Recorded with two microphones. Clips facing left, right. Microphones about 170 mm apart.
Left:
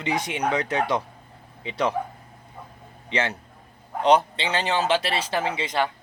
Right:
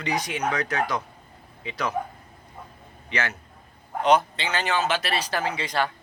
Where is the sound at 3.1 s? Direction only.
30° left (ahead or behind).